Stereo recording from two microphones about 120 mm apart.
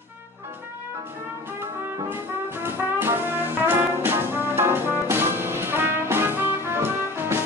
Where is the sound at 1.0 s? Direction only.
20° right (ahead or behind).